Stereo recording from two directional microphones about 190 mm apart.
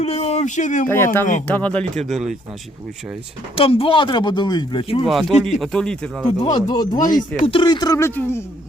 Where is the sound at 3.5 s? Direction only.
30° left (ahead or behind).